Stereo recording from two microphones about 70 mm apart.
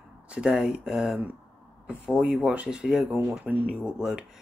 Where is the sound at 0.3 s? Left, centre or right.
Centre.